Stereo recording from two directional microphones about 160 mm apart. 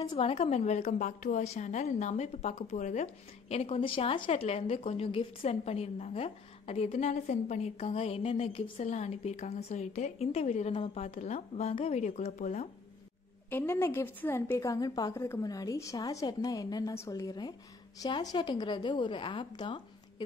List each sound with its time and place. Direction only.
0.0 s a woman's voice: 30° left (ahead or behind)
0.3 s a woman's voice: 40° left (ahead or behind)
13.5 s a woman's voice: 10° left (ahead or behind); by 20.2 s 30° left (ahead or behind)